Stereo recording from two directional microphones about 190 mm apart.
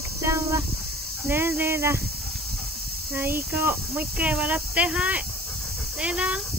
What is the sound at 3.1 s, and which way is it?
Speech, 10° right (ahead or behind).